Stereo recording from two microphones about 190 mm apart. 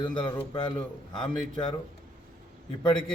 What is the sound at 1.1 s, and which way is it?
Speech, 5° left (ahead or behind).